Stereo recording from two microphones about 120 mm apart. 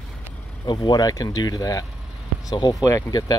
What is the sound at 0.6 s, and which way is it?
Speech, 35° left (ahead or behind).